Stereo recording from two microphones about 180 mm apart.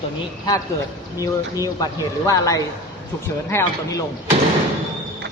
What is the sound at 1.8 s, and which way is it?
A man's voice, 20° left (ahead or behind).